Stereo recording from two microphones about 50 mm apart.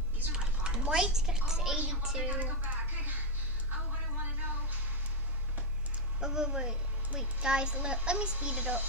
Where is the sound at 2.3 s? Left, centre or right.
Right.